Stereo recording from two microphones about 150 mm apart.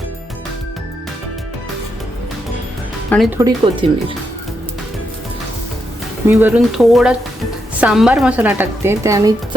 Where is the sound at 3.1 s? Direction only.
10° left (ahead or behind).